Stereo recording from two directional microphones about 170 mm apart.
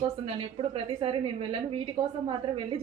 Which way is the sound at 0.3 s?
30° right (ahead or behind).